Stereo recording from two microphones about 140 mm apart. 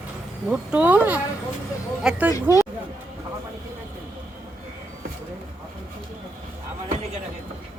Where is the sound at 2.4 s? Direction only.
20° right (ahead or behind).